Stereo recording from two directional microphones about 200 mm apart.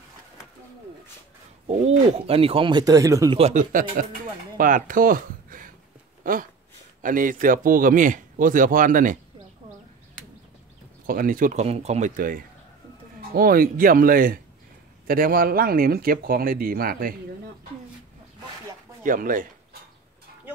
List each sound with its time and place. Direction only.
1.7 s speech: 30° right (ahead or behind); by 3.3 s 15° right (ahead or behind)
3.3 s speech: 35° right (ahead or behind)
11.1 s speech: 45° right (ahead or behind)
19.0 s speech: 45° right (ahead or behind)